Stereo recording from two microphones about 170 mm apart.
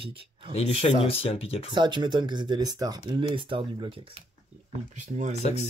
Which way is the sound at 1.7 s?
25° right (ahead or behind).